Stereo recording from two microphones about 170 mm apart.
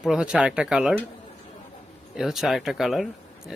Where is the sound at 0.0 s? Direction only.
5° right (ahead or behind).